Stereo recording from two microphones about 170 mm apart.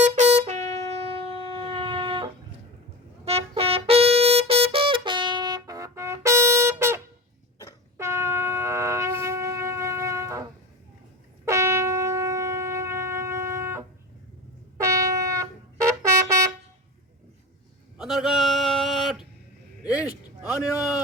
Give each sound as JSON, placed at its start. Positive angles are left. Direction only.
{"t": 0.0, "sound": "wind instrument", "side_deg": -40}
{"t": 3.2, "sound": "trumpet", "side_deg": -35}
{"t": 7.9, "sound": "shofar", "side_deg": -15}
{"t": 11.4, "sound": "shofar", "side_deg": -15}
{"t": 14.8, "sound": "trumpet", "side_deg": -15}
{"t": 17.9, "sound": "a sound", "side_deg": 0}